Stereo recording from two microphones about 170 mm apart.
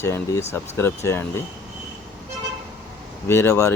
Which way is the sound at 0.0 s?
15° left (ahead or behind).